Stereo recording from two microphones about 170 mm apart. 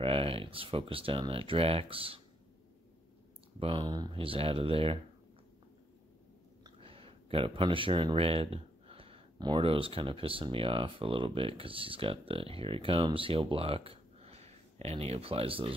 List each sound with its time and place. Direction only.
0.0 s speech: 35° right (ahead or behind)
3.5 s speech: 30° right (ahead or behind)
6.6 s speech: 30° right (ahead or behind)